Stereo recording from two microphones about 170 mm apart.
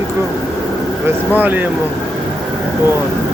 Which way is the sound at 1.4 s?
10° right (ahead or behind).